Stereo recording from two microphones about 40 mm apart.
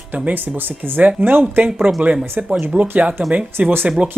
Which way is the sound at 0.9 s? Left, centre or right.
Right.